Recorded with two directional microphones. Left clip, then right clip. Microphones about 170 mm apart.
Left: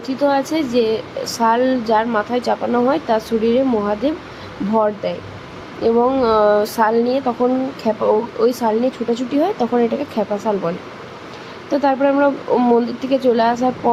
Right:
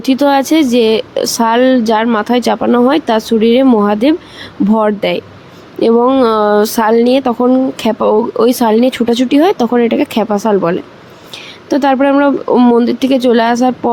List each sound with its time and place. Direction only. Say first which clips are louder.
0.0 s speech: right 7 dB; 40° right (ahead or behind)
5.8 s speech: right 6 dB; 40° right (ahead or behind)